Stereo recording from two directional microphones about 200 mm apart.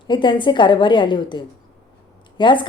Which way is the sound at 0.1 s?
25° left (ahead or behind).